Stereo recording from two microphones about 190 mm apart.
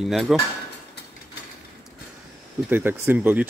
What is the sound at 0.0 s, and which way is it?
Speech, centre (ahead or behind).